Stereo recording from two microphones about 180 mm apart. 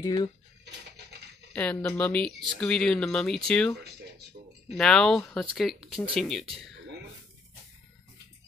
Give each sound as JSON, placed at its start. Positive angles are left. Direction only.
{"t": 0.0, "sound": "speech", "side_deg": 25}
{"t": 1.5, "sound": "speech", "side_deg": 5}
{"t": 4.7, "sound": "speech", "side_deg": 5}